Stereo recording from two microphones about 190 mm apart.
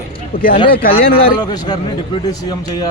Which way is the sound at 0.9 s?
30° left (ahead or behind).